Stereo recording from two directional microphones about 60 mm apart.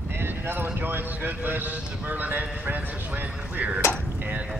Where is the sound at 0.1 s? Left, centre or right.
Right.